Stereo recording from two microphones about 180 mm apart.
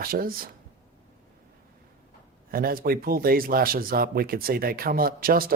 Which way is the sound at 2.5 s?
55° right (ahead or behind).